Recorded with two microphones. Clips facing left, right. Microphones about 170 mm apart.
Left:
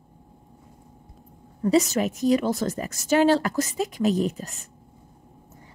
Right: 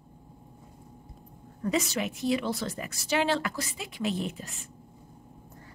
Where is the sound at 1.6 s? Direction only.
40° left (ahead or behind).